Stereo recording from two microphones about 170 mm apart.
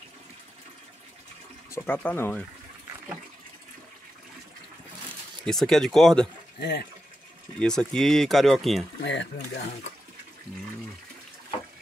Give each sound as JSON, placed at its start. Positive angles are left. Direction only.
{"t": 1.7, "sound": "speech", "side_deg": 10}
{"t": 5.4, "sound": "speech", "side_deg": 5}
{"t": 6.6, "sound": "speech", "side_deg": 75}
{"t": 7.5, "sound": "speech", "side_deg": 5}
{"t": 9.0, "sound": "speech", "side_deg": 90}